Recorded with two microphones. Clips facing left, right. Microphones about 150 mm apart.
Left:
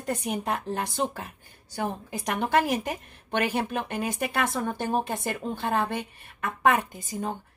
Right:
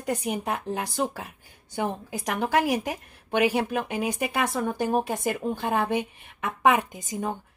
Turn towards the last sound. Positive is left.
turn(degrees=-15)  # may be behind; listen again after turning